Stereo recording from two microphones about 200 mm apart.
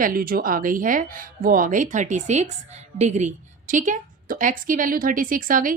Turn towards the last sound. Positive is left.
turn(degrees=-40)  # may be behind; listen again after turning